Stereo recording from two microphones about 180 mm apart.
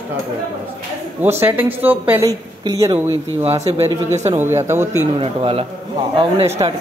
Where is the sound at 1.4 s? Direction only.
10° right (ahead or behind).